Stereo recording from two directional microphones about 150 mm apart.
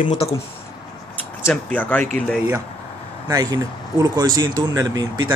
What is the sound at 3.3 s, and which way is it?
Speech, 25° right (ahead or behind).